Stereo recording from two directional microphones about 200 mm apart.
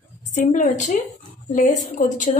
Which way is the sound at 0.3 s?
40° left (ahead or behind).